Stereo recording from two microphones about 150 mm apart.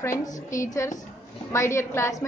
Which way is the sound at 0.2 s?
20° left (ahead or behind).